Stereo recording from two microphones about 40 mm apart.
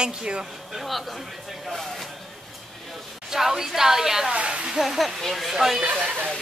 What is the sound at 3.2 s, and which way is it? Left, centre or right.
A woman's voice, centre.